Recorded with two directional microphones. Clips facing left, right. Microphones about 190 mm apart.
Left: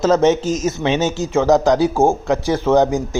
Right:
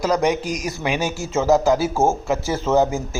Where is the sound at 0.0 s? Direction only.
25° left (ahead or behind).